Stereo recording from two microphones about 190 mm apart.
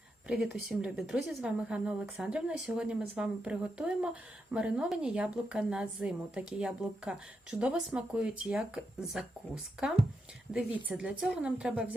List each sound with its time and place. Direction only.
0.3 s a woman's voice: centre (ahead or behind)
10.8 s a woman's voice: 5° right (ahead or behind)